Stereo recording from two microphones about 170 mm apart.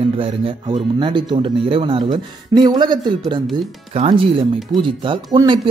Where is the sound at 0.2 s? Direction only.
30° right (ahead or behind).